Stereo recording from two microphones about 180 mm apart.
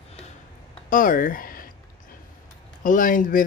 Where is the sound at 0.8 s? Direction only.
50° left (ahead or behind).